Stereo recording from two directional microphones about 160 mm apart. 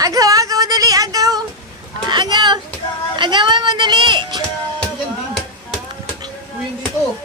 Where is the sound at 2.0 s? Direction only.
25° right (ahead or behind).